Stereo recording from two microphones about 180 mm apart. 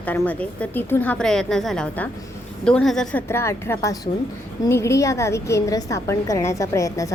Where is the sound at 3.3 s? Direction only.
15° left (ahead or behind).